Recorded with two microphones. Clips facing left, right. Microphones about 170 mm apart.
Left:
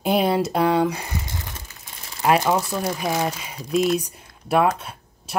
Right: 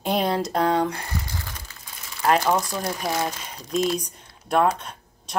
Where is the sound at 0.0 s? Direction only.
5° left (ahead or behind).